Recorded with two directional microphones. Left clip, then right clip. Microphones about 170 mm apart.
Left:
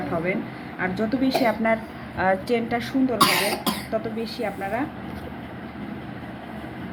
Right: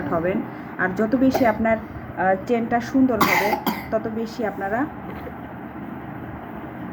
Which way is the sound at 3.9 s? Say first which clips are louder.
Right 4 dB; 15° right (ahead or behind).